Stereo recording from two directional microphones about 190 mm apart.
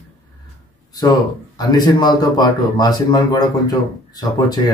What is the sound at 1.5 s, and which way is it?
A man's voice, 20° left (ahead or behind).